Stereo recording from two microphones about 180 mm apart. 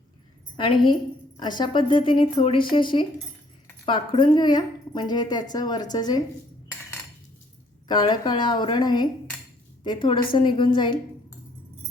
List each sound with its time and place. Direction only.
0.5 s a woman's voice: 30° left (ahead or behind)
7.9 s a woman's voice: 25° left (ahead or behind)